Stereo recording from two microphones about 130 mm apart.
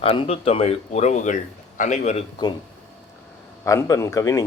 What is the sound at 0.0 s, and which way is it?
A man's voice, 45° left (ahead or behind).